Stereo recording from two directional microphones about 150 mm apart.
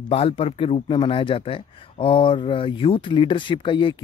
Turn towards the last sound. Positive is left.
turn(degrees=35)  # may be behind; listen again after turning